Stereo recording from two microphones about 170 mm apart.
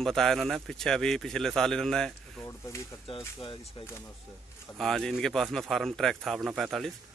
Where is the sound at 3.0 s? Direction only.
30° left (ahead or behind).